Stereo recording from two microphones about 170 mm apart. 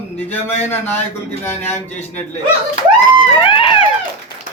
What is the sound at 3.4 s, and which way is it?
Speech, 30° left (ahead or behind).